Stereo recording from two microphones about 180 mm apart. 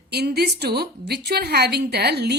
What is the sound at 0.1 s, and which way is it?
A woman's voice, 65° right (ahead or behind).